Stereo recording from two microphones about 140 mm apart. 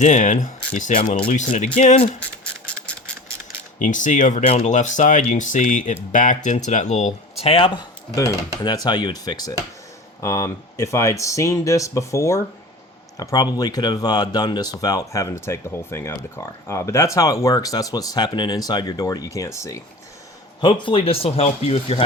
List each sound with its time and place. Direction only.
0.0 s speech: 60° left (ahead or behind)
3.8 s speech: 65° left (ahead or behind)
4.4 s speech: 50° left (ahead or behind)
8.1 s speech: 25° left (ahead or behind)
20.8 s speech: 40° left (ahead or behind)